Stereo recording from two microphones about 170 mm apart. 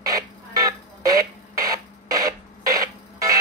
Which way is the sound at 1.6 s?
20° right (ahead or behind).